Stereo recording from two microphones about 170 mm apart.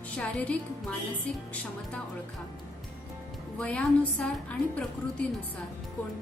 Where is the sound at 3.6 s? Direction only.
5° left (ahead or behind).